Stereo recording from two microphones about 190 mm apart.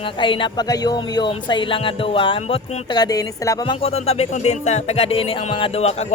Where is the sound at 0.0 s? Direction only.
25° left (ahead or behind).